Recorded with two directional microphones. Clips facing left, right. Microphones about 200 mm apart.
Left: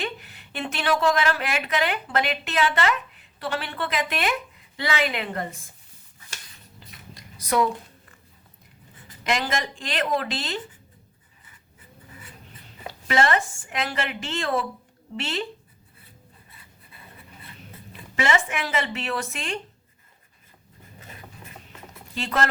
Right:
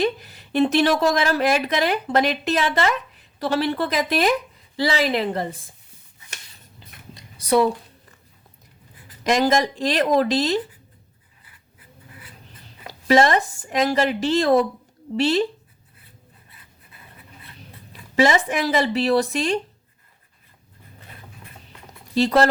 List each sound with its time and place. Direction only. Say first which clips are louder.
0.0 s a woman's voice: right 10 dB; 40° right (ahead or behind)
6.9 s a sound: right 2 dB; 50° right (ahead or behind)
7.3 s speech: right 5 dB; 30° right (ahead or behind)
9.2 s a woman's voice: right 8 dB; 40° right (ahead or behind)
12.9 s a woman's voice: right 6 dB; 40° right (ahead or behind)
18.2 s a woman's voice: right 6 dB; 35° right (ahead or behind)
22.1 s speech: right 9 dB; 35° right (ahead or behind)